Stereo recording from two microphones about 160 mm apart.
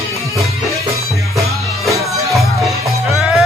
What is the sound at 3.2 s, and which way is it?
Music, 5° right (ahead or behind).